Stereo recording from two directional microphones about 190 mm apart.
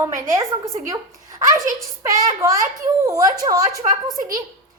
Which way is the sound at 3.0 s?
20° right (ahead or behind).